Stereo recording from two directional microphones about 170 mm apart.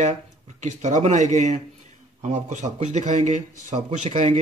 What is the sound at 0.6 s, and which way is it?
A man's voice, 45° right (ahead or behind).